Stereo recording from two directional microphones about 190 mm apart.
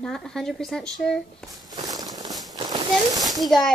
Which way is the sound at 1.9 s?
20° right (ahead or behind).